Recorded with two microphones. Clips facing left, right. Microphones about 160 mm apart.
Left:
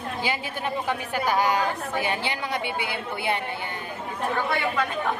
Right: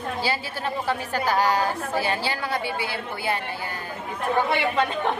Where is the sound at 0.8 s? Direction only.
15° left (ahead or behind).